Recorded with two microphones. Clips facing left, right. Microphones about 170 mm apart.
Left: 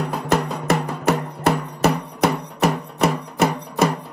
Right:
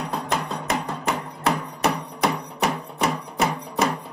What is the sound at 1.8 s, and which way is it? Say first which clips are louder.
Music: left 4 dB; 5° left (ahead or behind).